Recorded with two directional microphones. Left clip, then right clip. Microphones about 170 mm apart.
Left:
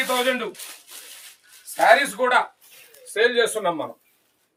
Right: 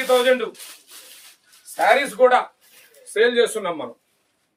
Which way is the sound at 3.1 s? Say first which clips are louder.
Right 2 dB; 20° right (ahead or behind).